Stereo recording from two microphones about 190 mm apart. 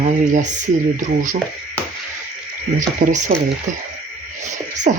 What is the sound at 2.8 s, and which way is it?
Speech, 40° right (ahead or behind).